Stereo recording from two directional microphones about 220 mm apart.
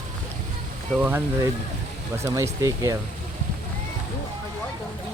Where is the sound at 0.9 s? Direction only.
10° right (ahead or behind).